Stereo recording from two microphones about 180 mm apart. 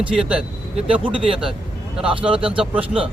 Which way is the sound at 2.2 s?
5° right (ahead or behind).